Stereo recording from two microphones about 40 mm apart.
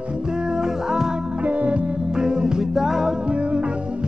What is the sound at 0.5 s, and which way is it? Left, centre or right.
Music, centre.